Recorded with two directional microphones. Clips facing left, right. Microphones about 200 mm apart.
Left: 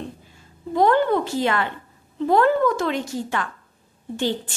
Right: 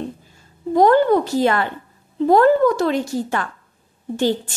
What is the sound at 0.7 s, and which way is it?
A woman's voice, 40° right (ahead or behind).